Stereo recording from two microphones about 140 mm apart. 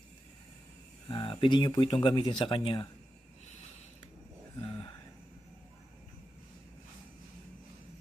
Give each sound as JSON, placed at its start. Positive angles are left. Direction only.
{"t": 1.0, "sound": "speech", "side_deg": 35}